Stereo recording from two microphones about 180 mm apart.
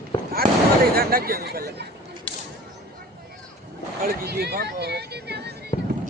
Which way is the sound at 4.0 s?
55° right (ahead or behind).